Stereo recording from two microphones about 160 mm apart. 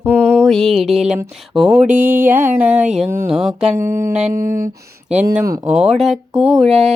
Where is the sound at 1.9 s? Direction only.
60° right (ahead or behind).